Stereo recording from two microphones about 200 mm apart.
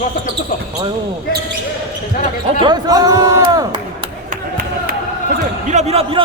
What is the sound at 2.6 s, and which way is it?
A man's voice, 20° right (ahead or behind).